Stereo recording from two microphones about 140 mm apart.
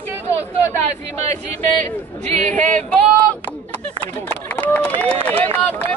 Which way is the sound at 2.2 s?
60° right (ahead or behind).